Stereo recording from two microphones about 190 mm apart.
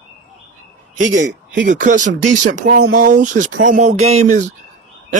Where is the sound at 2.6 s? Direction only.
90° right.